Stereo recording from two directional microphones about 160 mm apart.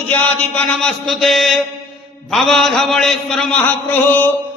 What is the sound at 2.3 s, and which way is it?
A man's voice, centre (ahead or behind).